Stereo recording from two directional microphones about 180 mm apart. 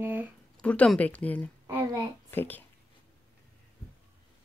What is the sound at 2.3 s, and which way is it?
Speech, 10° left (ahead or behind).